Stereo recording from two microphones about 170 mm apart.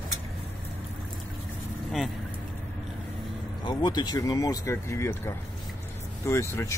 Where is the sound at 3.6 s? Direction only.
25° left (ahead or behind).